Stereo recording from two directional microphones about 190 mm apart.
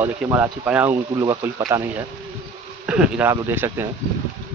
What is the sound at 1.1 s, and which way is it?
Speech, 20° right (ahead or behind).